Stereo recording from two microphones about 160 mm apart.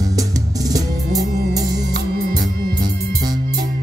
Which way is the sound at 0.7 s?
20° right (ahead or behind).